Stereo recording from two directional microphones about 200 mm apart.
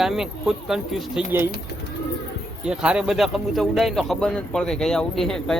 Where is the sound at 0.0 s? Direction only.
Centre (ahead or behind).